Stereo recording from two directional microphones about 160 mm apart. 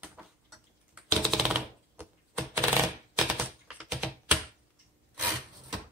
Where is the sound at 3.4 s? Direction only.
5° right (ahead or behind).